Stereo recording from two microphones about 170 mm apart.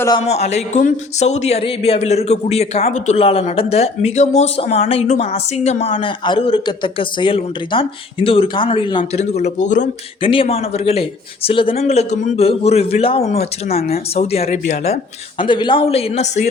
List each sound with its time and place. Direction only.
0.3 s speech: 40° left (ahead or behind)
9.3 s speech: 40° left (ahead or behind)
10.2 s speech: 30° left (ahead or behind)
15.4 s speech: 30° left (ahead or behind)